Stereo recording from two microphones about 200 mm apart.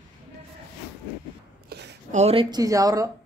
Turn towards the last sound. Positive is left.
turn(degrees=-15)  # may be behind; listen again after turning